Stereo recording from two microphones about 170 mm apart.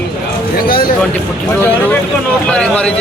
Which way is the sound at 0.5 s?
60° left (ahead or behind).